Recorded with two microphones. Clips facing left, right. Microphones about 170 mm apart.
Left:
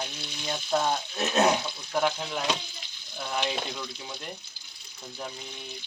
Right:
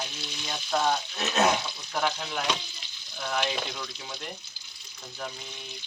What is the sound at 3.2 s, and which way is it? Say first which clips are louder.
Speech: right 1 dB; 10° left (ahead or behind).